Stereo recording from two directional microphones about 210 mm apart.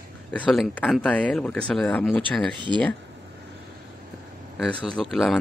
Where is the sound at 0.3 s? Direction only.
5° left (ahead or behind).